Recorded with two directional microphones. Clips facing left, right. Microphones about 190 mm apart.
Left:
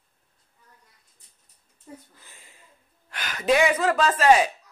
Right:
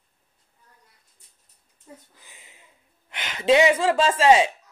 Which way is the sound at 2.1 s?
15° right (ahead or behind).